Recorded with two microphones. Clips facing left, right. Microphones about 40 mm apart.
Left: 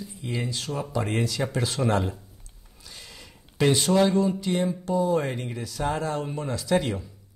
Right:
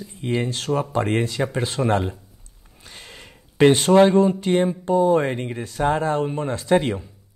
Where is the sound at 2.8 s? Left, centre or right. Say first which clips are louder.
Right 4 dB; right.